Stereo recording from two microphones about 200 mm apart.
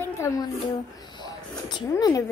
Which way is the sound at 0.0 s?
15° left (ahead or behind).